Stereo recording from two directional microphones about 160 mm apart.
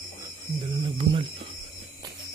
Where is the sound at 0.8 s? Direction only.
35° right (ahead or behind).